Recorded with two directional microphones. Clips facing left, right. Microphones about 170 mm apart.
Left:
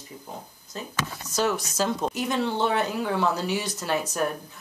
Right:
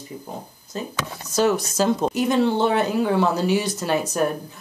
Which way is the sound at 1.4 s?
30° right (ahead or behind).